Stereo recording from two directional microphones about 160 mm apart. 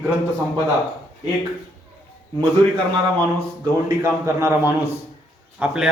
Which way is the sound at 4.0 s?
15° right (ahead or behind).